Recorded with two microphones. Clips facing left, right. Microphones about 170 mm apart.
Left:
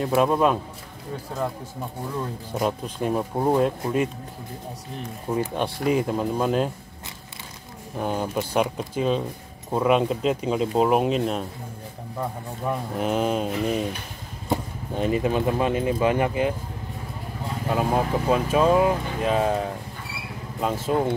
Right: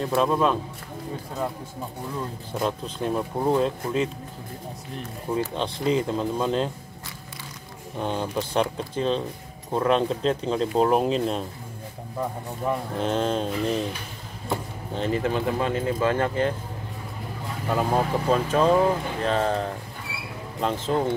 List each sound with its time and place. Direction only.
0.0 s speech: 10° left (ahead or behind)
2.5 s speech: 10° left (ahead or behind)
5.3 s speech: 10° left (ahead or behind)
8.0 s speech: 10° left (ahead or behind)
12.9 s speech: 10° left (ahead or behind)
17.6 s speech: 5° left (ahead or behind)